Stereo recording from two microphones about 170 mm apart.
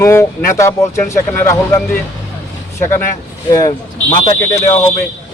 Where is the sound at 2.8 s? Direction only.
15° left (ahead or behind).